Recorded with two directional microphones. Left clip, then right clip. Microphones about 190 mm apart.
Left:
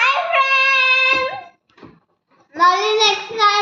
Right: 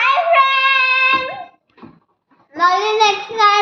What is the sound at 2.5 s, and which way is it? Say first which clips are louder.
Child singing: even; 10° right (ahead or behind).